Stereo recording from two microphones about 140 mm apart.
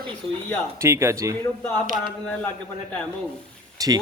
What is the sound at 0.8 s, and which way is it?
Speech, 20° right (ahead or behind).